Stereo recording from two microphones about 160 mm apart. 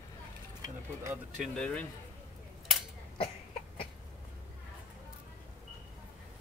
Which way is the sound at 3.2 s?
35° left (ahead or behind).